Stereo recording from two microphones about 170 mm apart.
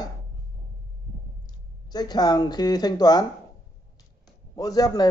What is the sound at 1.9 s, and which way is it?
A man's voice, 25° left (ahead or behind).